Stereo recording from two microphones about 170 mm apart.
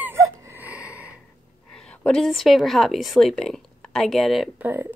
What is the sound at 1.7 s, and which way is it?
A woman's voice, 5° left (ahead or behind).